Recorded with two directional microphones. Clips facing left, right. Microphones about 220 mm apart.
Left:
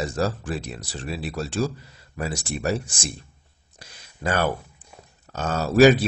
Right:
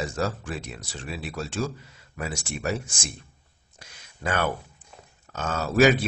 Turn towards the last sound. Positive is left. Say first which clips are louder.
# left 4 dB
turn(degrees=35)  # may be behind; listen again after turning